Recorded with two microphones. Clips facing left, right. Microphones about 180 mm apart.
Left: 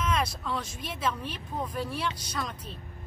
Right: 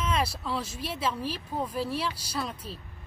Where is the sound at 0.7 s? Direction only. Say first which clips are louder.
Right 1 dB; 30° right (ahead or behind).